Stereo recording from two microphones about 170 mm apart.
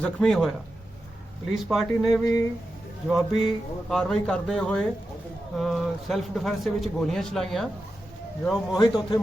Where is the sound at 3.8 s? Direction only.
5° left (ahead or behind).